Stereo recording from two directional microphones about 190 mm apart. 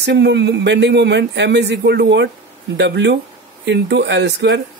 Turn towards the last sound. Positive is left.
turn(degrees=-65)  # may be behind; listen again after turning